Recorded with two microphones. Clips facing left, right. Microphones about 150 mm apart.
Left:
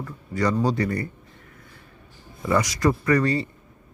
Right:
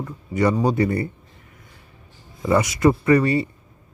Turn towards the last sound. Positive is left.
turn(degrees=-25)  # may be behind; listen again after turning